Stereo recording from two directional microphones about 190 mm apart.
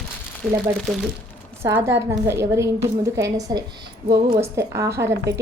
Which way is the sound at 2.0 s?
15° right (ahead or behind).